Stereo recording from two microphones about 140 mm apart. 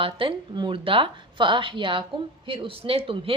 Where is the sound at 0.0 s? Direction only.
40° right (ahead or behind).